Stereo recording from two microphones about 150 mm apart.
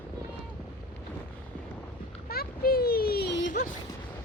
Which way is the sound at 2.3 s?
90° left.